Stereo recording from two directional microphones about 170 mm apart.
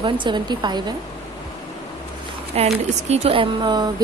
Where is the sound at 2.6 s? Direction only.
40° right (ahead or behind).